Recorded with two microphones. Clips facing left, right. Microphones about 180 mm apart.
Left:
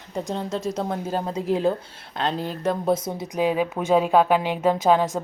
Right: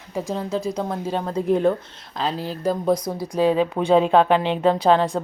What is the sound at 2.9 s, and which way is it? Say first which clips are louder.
Speech: right 2 dB; 25° left (ahead or behind).